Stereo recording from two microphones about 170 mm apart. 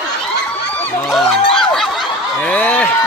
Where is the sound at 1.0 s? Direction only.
Centre (ahead or behind).